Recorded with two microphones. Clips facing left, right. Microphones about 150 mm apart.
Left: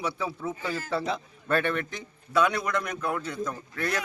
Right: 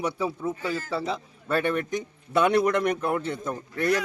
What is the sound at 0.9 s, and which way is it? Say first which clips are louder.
A man's voice: even; 5° right (ahead or behind).